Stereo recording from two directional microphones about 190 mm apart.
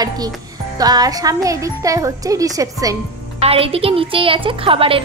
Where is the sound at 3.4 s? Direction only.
30° right (ahead or behind).